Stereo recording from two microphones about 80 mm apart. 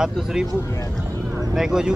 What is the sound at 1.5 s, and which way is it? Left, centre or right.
Speech, centre.